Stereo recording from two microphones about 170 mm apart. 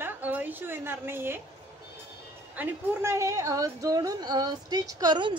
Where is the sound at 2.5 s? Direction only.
10° right (ahead or behind).